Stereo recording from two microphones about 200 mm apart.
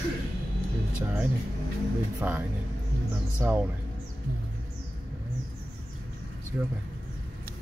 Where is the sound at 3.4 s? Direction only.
10° right (ahead or behind).